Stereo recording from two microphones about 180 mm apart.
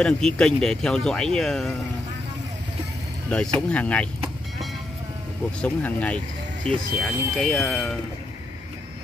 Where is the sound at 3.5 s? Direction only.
5° left (ahead or behind).